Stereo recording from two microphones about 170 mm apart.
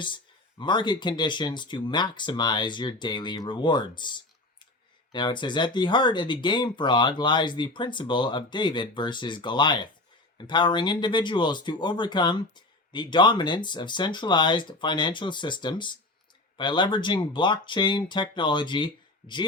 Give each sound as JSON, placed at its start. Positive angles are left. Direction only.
{"t": 0.6, "sound": "speech", "side_deg": 25}